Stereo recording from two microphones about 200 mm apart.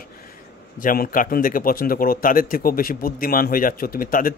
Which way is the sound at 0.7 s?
45° left (ahead or behind).